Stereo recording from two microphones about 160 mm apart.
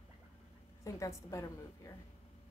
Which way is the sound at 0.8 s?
20° left (ahead or behind).